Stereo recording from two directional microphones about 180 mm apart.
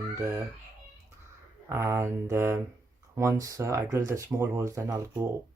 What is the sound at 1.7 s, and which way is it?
Speech, 15° right (ahead or behind).